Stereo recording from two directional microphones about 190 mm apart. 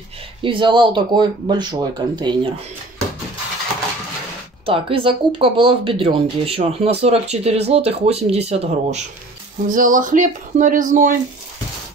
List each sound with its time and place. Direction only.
0.4 s speech: 25° right (ahead or behind)
4.6 s speech: 30° right (ahead or behind)